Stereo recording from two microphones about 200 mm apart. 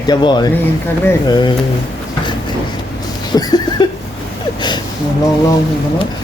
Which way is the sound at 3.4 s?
20° left (ahead or behind).